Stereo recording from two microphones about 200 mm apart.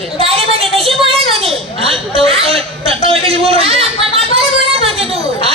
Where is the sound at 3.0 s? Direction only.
30° right (ahead or behind).